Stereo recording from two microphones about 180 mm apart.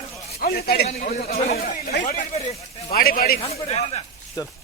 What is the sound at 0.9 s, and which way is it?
Speech, 40° left (ahead or behind).